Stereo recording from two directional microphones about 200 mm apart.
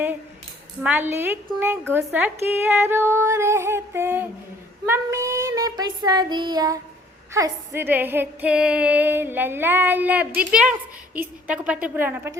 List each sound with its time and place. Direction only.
0.8 s female singing: 10° right (ahead or behind)
4.9 s child singing: 15° right (ahead or behind)
7.3 s female singing: 15° right (ahead or behind)